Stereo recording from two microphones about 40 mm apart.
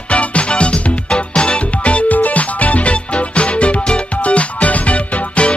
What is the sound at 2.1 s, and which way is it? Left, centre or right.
Music, left.